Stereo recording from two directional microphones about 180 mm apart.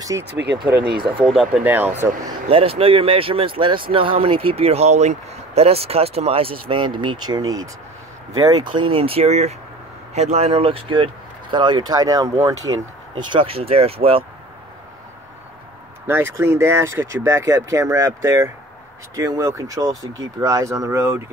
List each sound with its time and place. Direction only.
0.2 s speech: 75° right (ahead or behind)
1.2 s speech: 5° right (ahead or behind)
2.2 s speech: 30° right (ahead or behind)
13.3 s speech: 30° right (ahead or behind)
16.1 s speech: 15° right (ahead or behind)